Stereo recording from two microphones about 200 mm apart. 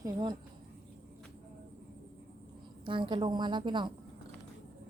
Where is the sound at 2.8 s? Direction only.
25° right (ahead or behind).